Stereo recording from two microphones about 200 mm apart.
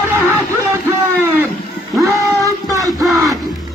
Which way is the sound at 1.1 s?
10° right (ahead or behind).